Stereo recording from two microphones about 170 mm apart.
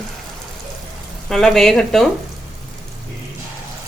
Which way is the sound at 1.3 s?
Centre (ahead or behind).